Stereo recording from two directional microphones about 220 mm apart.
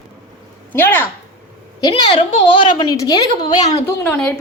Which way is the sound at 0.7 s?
10° left (ahead or behind).